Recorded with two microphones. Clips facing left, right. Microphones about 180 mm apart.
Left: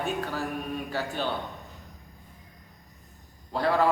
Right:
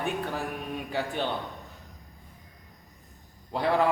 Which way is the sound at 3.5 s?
15° right (ahead or behind).